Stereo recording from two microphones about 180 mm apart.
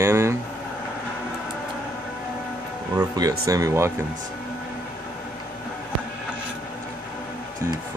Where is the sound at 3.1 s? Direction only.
20° right (ahead or behind).